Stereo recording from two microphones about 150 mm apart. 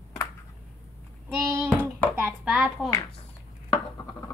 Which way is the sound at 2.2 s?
5° right (ahead or behind).